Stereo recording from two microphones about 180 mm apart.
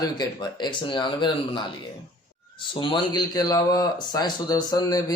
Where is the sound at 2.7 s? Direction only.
30° left (ahead or behind).